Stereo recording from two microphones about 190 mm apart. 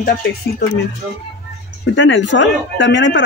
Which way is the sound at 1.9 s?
75° left (ahead or behind).